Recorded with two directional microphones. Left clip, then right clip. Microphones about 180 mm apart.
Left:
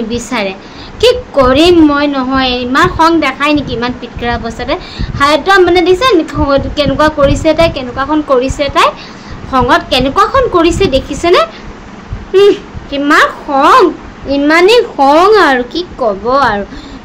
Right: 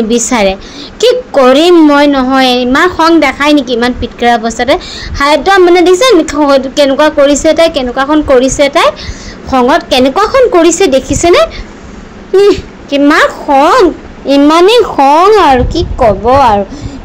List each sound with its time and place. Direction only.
0.1 s a woman's voice: 40° right (ahead or behind)
15.1 s a woman's voice: 15° right (ahead or behind)